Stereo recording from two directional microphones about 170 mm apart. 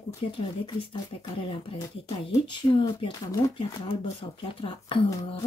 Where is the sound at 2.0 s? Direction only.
30° left (ahead or behind).